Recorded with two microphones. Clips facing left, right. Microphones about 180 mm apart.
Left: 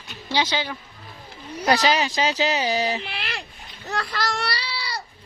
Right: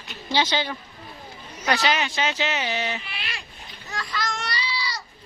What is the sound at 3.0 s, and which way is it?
Speech, 65° left (ahead or behind).